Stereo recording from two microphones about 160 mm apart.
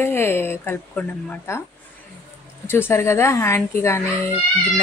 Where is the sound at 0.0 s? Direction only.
15° left (ahead or behind).